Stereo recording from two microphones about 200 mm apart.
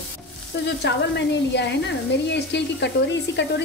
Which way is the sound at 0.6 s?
55° left (ahead or behind).